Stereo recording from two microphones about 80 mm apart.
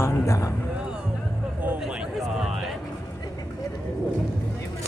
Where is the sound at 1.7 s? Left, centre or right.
Centre.